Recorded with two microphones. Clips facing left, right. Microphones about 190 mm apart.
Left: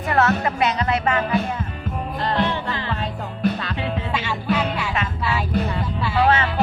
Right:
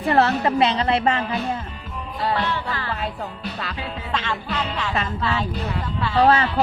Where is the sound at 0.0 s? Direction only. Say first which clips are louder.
Right 1 dB; 30° right (ahead or behind).